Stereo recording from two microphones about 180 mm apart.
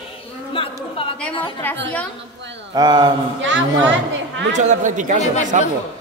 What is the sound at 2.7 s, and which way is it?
Speech, 25° right (ahead or behind).